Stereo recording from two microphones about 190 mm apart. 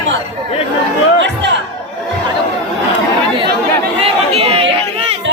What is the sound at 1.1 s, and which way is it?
Music, 75° right (ahead or behind).